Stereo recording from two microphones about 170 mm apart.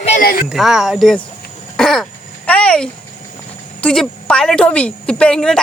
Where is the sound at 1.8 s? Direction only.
Centre (ahead or behind).